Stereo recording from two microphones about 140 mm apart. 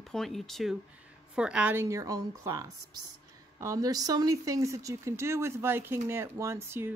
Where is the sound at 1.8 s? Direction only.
25° right (ahead or behind).